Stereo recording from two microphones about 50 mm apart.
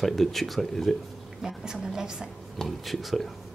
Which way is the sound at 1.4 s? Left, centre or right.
Centre.